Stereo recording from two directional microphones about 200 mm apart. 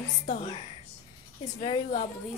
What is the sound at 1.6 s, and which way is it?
Speech, 30° left (ahead or behind).